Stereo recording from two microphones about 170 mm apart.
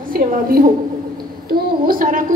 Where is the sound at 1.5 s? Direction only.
55° right (ahead or behind).